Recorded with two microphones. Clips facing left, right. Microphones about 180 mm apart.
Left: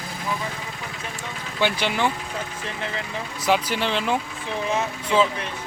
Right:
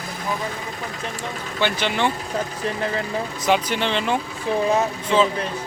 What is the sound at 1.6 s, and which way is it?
Speech, 10° left (ahead or behind).